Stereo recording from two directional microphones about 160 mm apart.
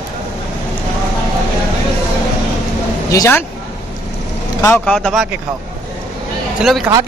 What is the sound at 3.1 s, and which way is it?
Speech, 15° left (ahead or behind).